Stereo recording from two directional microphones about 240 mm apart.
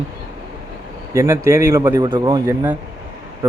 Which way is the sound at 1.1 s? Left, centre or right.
Centre.